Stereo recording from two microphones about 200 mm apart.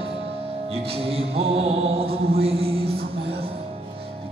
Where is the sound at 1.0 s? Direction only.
30° right (ahead or behind).